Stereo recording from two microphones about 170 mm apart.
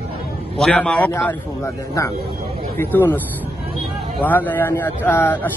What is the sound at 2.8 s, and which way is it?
Speech, 15° left (ahead or behind).